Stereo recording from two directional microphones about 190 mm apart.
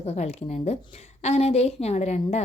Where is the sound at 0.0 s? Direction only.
35° left (ahead or behind).